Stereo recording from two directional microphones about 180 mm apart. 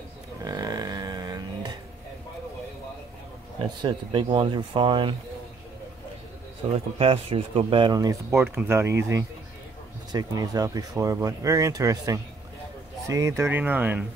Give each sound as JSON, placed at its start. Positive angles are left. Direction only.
{"t": 0.4, "sound": "a sound", "side_deg": -20}
{"t": 3.8, "sound": "speech", "side_deg": -30}
{"t": 7.0, "sound": "speech", "side_deg": -30}